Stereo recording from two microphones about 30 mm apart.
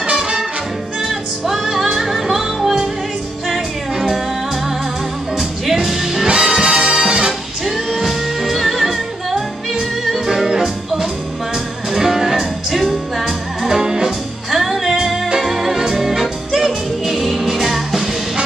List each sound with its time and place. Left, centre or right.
1.5 s music: centre
5.4 s music: centre
6.2 s brass instrument: right
7.6 s music: centre
13.6 s music: centre